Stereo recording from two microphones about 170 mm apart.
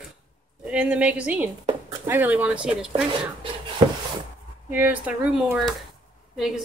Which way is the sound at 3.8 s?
30° right (ahead or behind).